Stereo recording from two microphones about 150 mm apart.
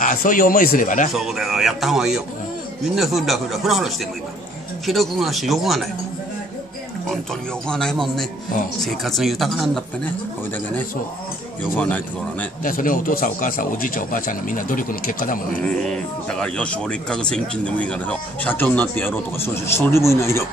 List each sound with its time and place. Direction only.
0.0 s speech: 65° left (ahead or behind)
1.1 s a man's voice: centre (ahead or behind)
7.6 s a man's voice: 5° left (ahead or behind)
11.7 s speech: 10° left (ahead or behind)
12.6 s speech: 65° left (ahead or behind)
15.6 s speech: 5° left (ahead or behind)